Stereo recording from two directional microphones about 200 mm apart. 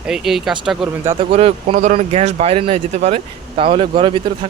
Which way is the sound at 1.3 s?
30° right (ahead or behind).